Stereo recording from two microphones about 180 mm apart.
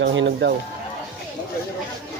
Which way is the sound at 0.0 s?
85° right.